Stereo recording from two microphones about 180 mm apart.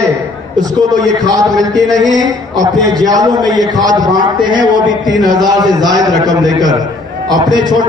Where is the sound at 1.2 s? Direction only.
20° right (ahead or behind).